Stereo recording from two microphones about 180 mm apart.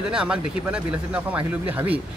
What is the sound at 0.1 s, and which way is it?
Speech, 5° right (ahead or behind).